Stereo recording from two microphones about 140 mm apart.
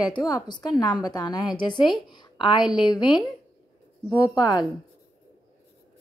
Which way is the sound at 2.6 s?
5° right (ahead or behind).